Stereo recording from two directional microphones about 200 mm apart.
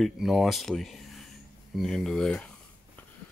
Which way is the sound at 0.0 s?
Centre (ahead or behind).